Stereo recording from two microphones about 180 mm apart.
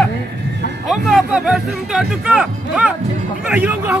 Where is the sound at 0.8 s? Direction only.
Centre (ahead or behind).